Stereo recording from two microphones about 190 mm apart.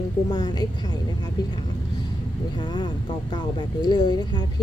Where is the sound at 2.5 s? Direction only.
25° left (ahead or behind).